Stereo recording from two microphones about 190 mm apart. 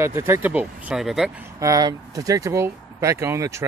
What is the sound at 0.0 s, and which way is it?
Speech, 15° right (ahead or behind).